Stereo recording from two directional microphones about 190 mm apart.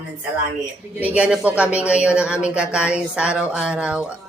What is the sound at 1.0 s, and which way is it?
Speech, 5° right (ahead or behind).